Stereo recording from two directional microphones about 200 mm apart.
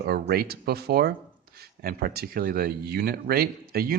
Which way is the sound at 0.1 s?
50° right (ahead or behind).